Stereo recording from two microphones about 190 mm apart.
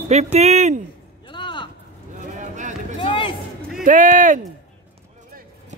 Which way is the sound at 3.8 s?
45° right (ahead or behind).